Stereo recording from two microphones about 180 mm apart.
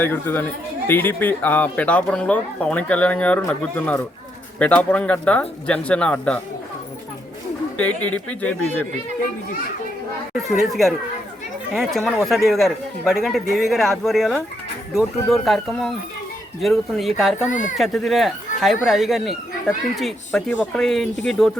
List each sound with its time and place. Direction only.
0.0 s speech: 10° left (ahead or behind)
7.8 s speech: 10° left (ahead or behind)
10.6 s speech: centre (ahead or behind)
17.5 s speech: 45° left (ahead or behind)
17.7 s speech: centre (ahead or behind)